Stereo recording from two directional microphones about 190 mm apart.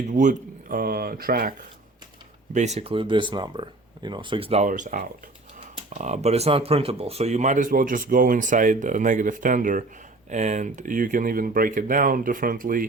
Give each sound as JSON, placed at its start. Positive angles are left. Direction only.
{"t": 0.1, "sound": "speech", "side_deg": -40}
{"t": 2.7, "sound": "speech", "side_deg": -30}